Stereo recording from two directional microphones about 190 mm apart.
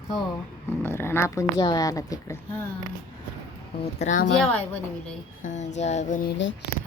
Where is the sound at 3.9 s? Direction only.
40° left (ahead or behind).